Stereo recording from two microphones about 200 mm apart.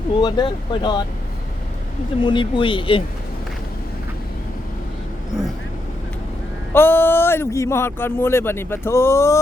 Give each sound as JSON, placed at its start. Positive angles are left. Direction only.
{"t": 0.2, "sound": "speech", "side_deg": 20}
{"t": 2.2, "sound": "speech", "side_deg": 25}
{"t": 6.7, "sound": "speech", "side_deg": 10}